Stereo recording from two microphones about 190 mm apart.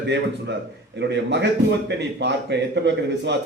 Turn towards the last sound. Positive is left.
turn(degrees=-65)  # may be behind; listen again after turning